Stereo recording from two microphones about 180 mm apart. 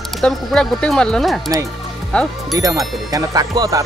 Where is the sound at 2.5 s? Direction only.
20° right (ahead or behind).